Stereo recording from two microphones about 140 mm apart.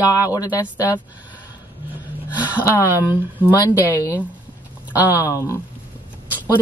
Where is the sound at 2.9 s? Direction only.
15° right (ahead or behind).